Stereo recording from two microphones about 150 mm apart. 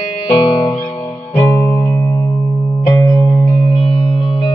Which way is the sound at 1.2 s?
15° left (ahead or behind).